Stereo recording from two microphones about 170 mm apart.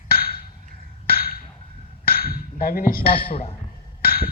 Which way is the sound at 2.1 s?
65° left (ahead or behind).